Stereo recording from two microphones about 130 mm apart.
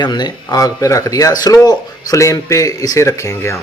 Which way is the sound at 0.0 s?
35° left (ahead or behind).